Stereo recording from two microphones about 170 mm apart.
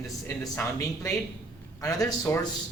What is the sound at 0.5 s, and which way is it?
A man's voice, 20° left (ahead or behind).